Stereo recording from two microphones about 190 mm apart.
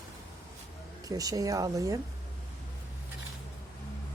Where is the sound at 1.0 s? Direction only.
20° right (ahead or behind).